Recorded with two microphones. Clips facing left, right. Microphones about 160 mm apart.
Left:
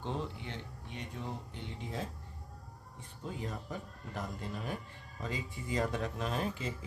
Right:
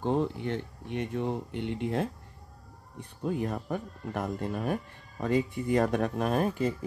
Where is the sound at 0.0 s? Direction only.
55° right (ahead or behind).